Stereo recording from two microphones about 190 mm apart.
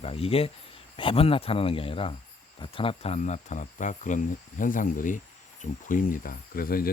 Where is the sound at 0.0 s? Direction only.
30° left (ahead or behind).